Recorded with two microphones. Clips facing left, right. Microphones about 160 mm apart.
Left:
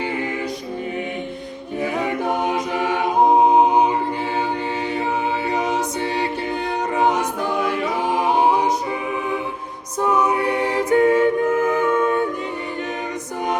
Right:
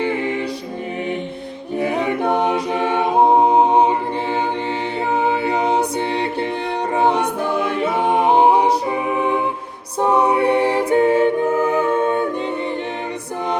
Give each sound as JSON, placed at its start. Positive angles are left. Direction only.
{"t": 2.3, "sound": "a capella", "side_deg": -30}
{"t": 3.7, "sound": "music", "side_deg": -30}
{"t": 5.5, "sound": "music", "side_deg": -30}
{"t": 6.9, "sound": "a capella", "side_deg": -30}
{"t": 8.2, "sound": "music", "side_deg": -30}